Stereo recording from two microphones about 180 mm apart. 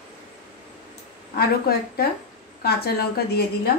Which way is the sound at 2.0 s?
60° left (ahead or behind).